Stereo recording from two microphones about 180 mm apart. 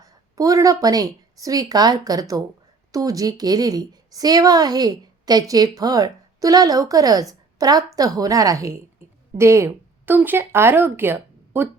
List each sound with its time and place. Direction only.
0.0 s a woman's voice: 20° right (ahead or behind)